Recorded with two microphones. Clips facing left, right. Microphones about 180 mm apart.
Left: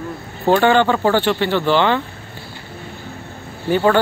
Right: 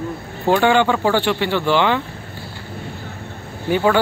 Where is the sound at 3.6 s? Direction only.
10° right (ahead or behind).